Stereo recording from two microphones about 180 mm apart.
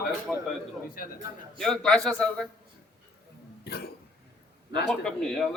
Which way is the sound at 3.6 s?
60° left (ahead or behind).